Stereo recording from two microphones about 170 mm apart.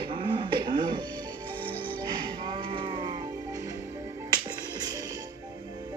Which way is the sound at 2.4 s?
30° right (ahead or behind).